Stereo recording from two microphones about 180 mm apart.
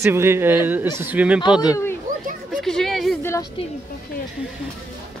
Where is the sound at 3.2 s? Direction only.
15° left (ahead or behind).